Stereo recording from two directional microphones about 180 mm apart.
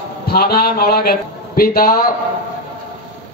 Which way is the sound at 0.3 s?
60° left (ahead or behind).